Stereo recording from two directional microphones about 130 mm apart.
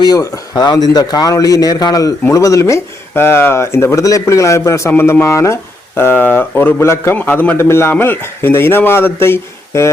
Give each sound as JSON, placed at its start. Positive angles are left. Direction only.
{"t": 0.0, "sound": "a man's voice", "side_deg": 30}